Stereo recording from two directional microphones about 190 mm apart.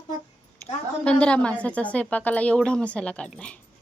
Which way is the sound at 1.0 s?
5° left (ahead or behind).